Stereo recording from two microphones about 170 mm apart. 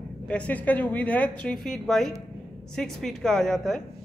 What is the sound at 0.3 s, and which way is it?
A woman's voice, 10° left (ahead or behind).